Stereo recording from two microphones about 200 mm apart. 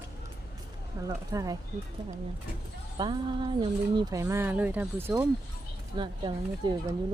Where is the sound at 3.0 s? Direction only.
25° right (ahead or behind).